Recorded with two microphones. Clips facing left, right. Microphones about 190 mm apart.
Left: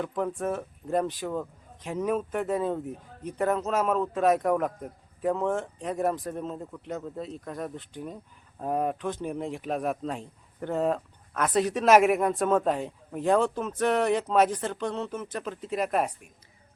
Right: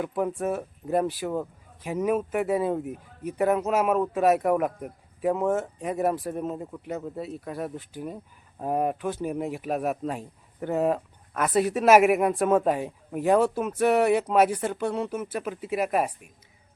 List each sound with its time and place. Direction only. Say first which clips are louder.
0.0 s speech: right 2 dB; 10° right (ahead or behind)